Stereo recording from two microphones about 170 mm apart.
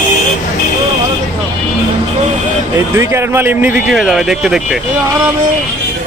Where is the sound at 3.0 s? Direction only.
15° right (ahead or behind).